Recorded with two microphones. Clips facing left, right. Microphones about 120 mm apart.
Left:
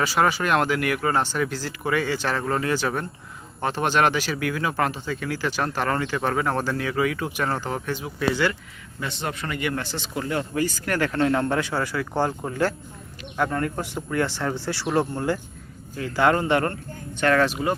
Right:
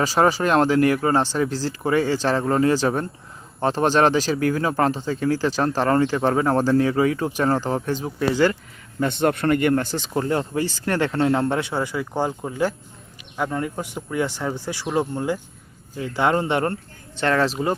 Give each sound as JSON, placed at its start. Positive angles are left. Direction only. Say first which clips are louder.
{"t": 0.0, "sound": "speech", "louder": "right 3 dB", "side_deg": -35}
{"t": 9.0, "sound": "speech", "louder": "right 10 dB", "side_deg": -50}